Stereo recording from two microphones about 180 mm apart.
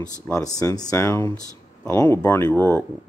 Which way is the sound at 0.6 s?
20° left (ahead or behind).